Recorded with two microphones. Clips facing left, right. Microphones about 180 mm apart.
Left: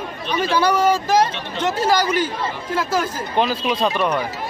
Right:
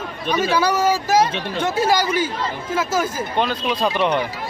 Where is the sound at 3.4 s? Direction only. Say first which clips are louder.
Left 2 dB; centre (ahead or behind).